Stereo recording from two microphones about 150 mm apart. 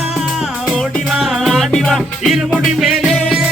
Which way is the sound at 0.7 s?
Centre (ahead or behind).